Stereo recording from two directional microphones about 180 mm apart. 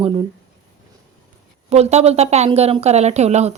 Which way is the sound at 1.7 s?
35° right (ahead or behind).